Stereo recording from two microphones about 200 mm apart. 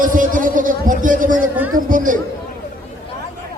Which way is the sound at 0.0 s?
40° right (ahead or behind).